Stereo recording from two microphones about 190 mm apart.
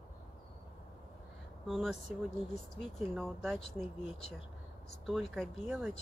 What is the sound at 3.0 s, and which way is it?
Speech, centre (ahead or behind).